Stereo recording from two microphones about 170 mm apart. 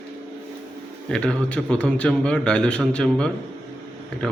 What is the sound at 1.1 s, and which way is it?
A man's voice, 5° left (ahead or behind).